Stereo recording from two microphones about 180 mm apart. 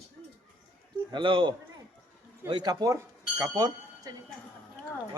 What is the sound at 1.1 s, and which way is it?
Speech, 30° right (ahead or behind).